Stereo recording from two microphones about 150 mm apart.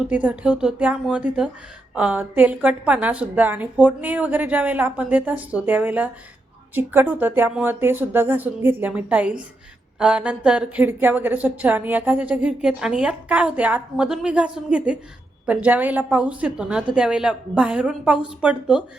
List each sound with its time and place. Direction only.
0.0 s a woman's voice: 10° right (ahead or behind)